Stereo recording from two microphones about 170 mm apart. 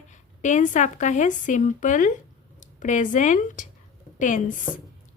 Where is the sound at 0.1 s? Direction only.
45° left (ahead or behind).